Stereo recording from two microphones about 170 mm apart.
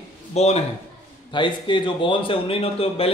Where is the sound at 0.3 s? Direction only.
40° left (ahead or behind).